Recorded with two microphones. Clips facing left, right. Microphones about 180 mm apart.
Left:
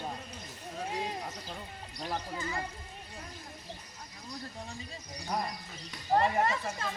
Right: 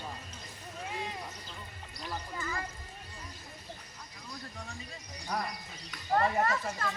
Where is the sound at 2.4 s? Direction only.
25° left (ahead or behind).